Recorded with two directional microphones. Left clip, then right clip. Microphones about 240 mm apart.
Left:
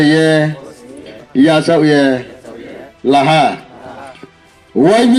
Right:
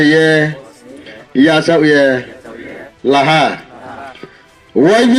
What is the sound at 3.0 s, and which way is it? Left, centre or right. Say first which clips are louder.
Speech: even; left.